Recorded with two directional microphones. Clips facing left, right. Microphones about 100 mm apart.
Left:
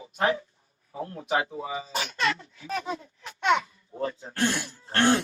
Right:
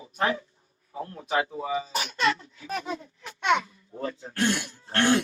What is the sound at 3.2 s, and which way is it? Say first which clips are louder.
Babbling: left 1 dB; 35° left (ahead or behind).